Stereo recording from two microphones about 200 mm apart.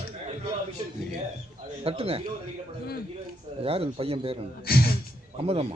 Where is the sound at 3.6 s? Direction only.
30° right (ahead or behind).